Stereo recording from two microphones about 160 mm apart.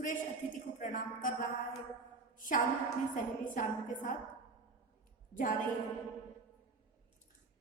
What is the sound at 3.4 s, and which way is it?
Speech, 60° left (ahead or behind).